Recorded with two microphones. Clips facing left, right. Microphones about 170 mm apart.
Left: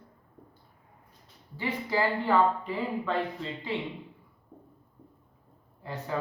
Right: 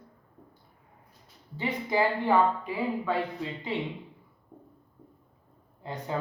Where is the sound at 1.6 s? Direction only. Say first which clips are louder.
Right 2 dB; 15° right (ahead or behind).